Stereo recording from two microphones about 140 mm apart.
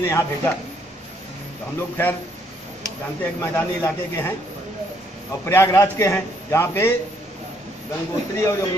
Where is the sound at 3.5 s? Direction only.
15° left (ahead or behind).